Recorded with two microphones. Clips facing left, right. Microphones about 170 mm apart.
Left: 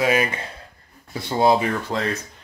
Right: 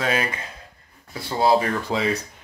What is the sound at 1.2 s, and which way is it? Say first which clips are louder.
Speech: left 1 dB; 20° left (ahead or behind).